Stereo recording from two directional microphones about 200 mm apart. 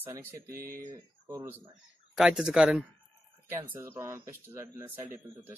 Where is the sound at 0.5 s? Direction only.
45° right (ahead or behind).